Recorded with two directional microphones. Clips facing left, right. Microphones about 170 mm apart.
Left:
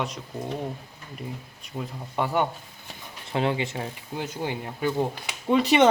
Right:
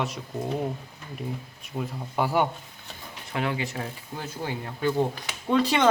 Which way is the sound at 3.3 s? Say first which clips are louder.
Left 3 dB; 25° left (ahead or behind).